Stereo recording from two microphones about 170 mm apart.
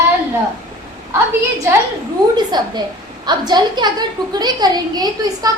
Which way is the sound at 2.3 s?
25° right (ahead or behind).